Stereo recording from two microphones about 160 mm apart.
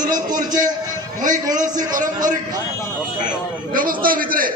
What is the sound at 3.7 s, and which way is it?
Speech, 60° right (ahead or behind).